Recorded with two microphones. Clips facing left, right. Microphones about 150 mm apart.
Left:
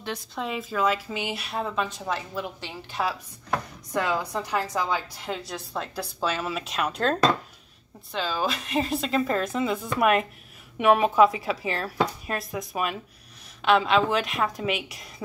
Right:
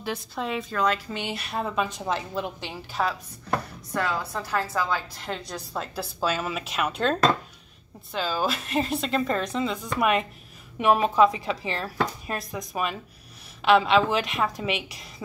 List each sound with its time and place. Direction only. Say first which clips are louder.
0.0 s a woman's voice: right 1 dB; centre (ahead or behind)
1.9 s a woman's voice: right 2 dB; 20° right (ahead or behind)
2.9 s a woman's voice: right 1 dB; 5° left (ahead or behind)
3.9 s a woman's voice: left 2 dB; 15° left (ahead or behind); by 15.2 s centre (ahead or behind)